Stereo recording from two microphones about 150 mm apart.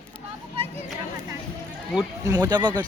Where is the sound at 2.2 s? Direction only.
25° right (ahead or behind).